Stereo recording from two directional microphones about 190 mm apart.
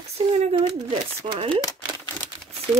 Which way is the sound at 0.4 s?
30° right (ahead or behind).